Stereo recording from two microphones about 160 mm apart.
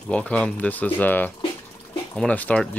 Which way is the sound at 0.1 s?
10° left (ahead or behind).